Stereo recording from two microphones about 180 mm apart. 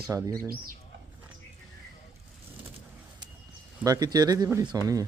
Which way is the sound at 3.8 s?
20° right (ahead or behind).